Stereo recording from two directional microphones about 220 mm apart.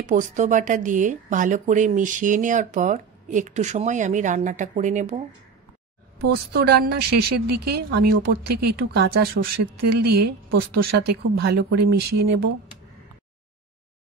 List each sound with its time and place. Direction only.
0.0 s speech: 35° right (ahead or behind)
6.2 s a woman's voice: 45° right (ahead or behind)